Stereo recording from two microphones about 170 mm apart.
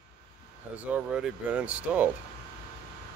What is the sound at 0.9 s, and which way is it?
Speech, 10° right (ahead or behind).